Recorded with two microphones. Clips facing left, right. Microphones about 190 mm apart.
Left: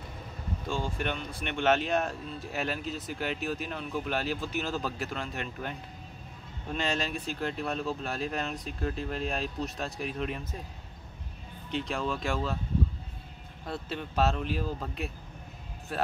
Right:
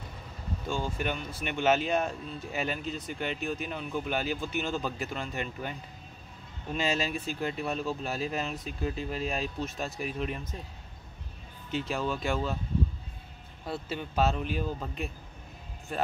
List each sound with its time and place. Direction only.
0.7 s speech: centre (ahead or behind)
11.7 s speech: 5° right (ahead or behind)
13.7 s speech: centre (ahead or behind)